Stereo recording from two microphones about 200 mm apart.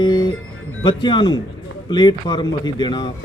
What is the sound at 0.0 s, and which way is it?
Music, 25° left (ahead or behind).